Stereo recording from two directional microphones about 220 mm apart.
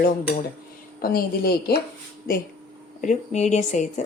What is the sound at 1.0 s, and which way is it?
Speech, 45° left (ahead or behind).